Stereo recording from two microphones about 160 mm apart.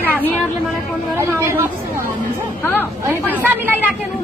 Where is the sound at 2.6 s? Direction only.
15° left (ahead or behind).